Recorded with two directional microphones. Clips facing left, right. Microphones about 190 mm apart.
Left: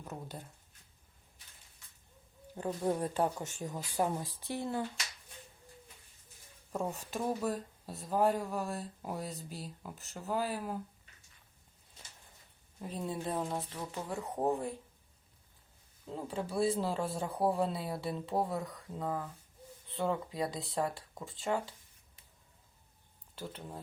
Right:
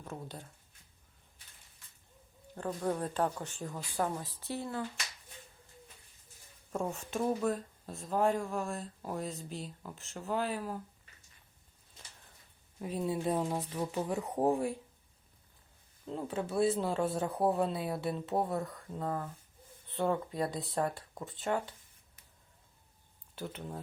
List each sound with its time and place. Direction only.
0.0 s speech: 5° left (ahead or behind)
2.6 s speech: 10° left (ahead or behind)
6.7 s speech: 5° left (ahead or behind)
12.8 s speech: 5° right (ahead or behind)
16.1 s speech: centre (ahead or behind)